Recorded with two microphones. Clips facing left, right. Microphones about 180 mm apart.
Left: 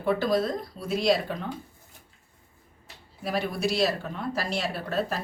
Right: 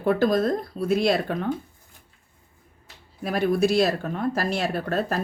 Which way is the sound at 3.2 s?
50° right (ahead or behind).